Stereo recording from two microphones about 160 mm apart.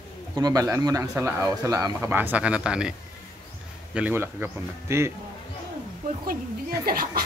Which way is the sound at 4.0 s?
10° right (ahead or behind).